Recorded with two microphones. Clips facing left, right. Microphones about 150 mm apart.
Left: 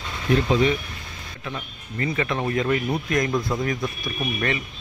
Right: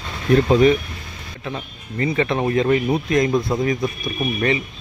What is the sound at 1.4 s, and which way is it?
Speech, 35° right (ahead or behind).